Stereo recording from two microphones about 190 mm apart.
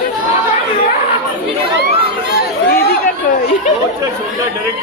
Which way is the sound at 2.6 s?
50° left (ahead or behind).